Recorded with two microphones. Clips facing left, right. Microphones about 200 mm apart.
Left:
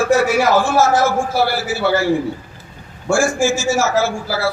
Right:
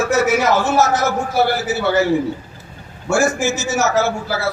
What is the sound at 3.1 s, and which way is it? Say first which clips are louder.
A man's voice: left 1 dB; 20° right (ahead or behind).